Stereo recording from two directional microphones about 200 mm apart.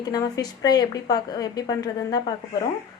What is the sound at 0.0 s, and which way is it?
A woman's voice, 20° left (ahead or behind).